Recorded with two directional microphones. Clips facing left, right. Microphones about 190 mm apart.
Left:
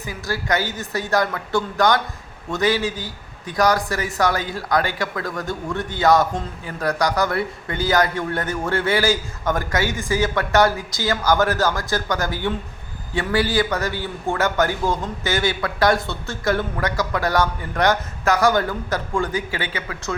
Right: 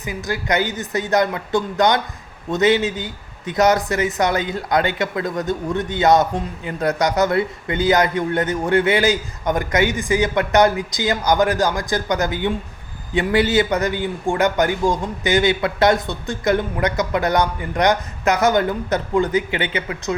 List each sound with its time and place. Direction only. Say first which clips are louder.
0.0 s speech: right 2 dB; 20° right (ahead or behind)